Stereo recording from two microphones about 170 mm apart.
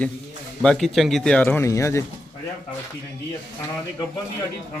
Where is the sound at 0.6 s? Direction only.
5° left (ahead or behind).